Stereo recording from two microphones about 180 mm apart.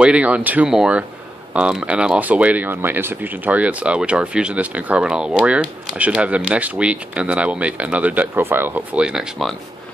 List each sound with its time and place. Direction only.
0.0 s speech: 5° right (ahead or behind)